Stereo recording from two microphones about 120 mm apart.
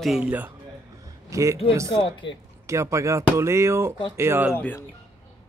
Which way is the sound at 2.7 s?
25° right (ahead or behind).